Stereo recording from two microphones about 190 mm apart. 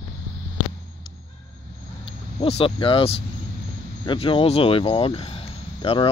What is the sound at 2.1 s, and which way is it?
Speech, 30° left (ahead or behind).